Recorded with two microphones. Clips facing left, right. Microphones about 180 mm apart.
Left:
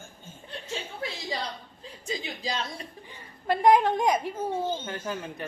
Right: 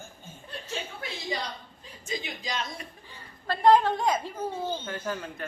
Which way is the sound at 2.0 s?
30° left (ahead or behind).